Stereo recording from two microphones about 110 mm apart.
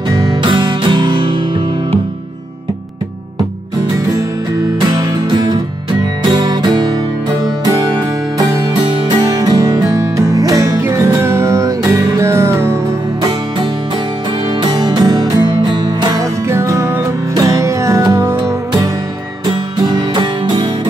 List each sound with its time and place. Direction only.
0.4 s music: 45° right (ahead or behind)
4.7 s music: 35° right (ahead or behind)
14.6 s music: 40° right (ahead or behind)
16.4 s music: 25° right (ahead or behind)
19.8 s music: 40° right (ahead or behind)